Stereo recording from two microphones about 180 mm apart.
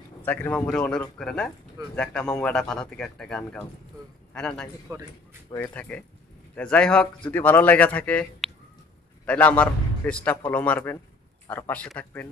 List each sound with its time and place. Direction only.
0.2 s speech: 10° left (ahead or behind)
1.8 s a man's voice: 20° right (ahead or behind)
2.3 s a man's voice: 5° left (ahead or behind)
4.9 s speech: 20° right (ahead or behind)
5.8 s speech: 5° left (ahead or behind)